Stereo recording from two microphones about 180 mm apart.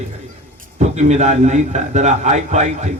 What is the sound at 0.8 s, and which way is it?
A man's voice, 40° right (ahead or behind).